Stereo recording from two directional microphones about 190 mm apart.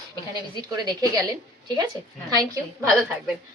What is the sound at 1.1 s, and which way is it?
Speech, 20° right (ahead or behind).